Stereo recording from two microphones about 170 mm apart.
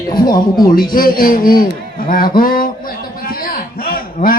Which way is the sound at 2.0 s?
60° left (ahead or behind).